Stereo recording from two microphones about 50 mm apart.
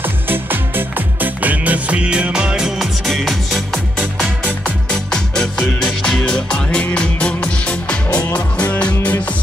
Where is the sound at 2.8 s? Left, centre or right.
Centre.